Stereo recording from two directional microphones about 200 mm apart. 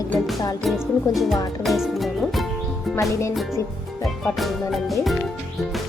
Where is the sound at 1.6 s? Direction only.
Centre (ahead or behind).